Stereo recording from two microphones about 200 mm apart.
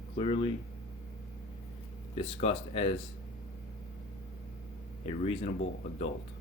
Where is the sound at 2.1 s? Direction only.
30° left (ahead or behind).